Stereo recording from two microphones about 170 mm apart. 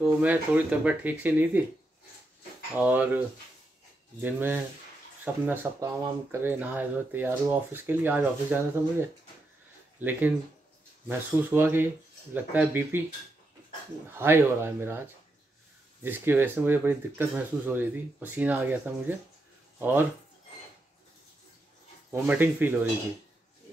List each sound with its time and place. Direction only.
0.0 s speech: 10° right (ahead or behind)
2.8 s speech: 10° right (ahead or behind)
4.2 s speech: 10° right (ahead or behind)
14.1 s speech: 15° right (ahead or behind)
22.1 s speech: 10° right (ahead or behind)